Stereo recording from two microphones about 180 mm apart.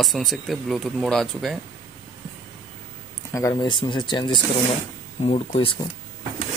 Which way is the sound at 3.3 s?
20° left (ahead or behind).